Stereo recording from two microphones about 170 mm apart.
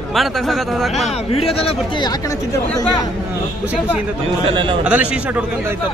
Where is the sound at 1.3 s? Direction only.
35° left (ahead or behind).